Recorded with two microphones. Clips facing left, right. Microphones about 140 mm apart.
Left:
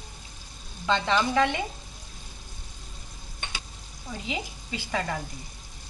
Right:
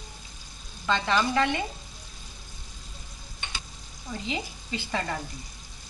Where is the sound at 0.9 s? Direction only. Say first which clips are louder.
Left 1 dB; 20° left (ahead or behind).